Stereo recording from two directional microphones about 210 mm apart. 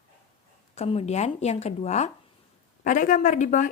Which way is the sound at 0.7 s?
30° left (ahead or behind).